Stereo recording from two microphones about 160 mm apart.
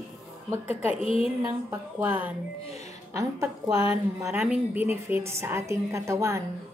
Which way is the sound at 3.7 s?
35° left (ahead or behind).